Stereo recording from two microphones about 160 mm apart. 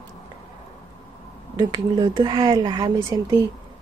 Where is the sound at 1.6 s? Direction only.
25° right (ahead or behind).